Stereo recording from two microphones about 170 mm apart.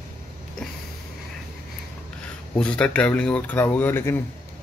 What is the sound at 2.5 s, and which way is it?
Speech, 5° left (ahead or behind).